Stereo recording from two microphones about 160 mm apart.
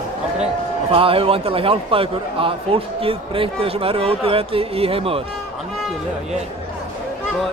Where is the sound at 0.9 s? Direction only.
35° right (ahead or behind).